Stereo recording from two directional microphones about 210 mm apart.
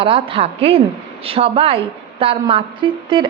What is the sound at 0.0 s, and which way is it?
A woman's voice, 25° right (ahead or behind).